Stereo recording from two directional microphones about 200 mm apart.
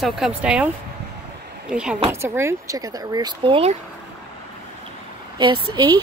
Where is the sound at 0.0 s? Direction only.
5° right (ahead or behind).